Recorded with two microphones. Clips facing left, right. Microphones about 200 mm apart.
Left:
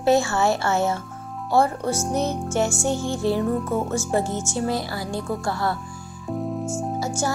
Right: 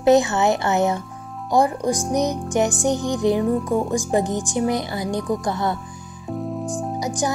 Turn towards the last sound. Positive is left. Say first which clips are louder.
# right 1 dB
turn(degrees=-15)  # may be behind; listen again after turning